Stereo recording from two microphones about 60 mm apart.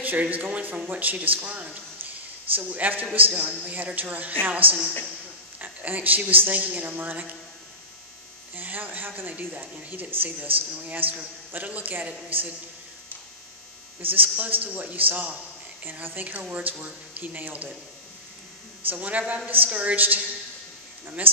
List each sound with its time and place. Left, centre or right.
0.0 s speech: right
5.6 s speech: right
8.5 s speech: right
14.2 s speech: right
18.9 s speech: right
21.2 s speech: right